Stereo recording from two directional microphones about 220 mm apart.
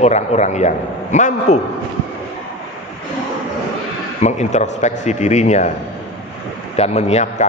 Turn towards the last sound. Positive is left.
turn(degrees=30)  # may be behind; listen again after turning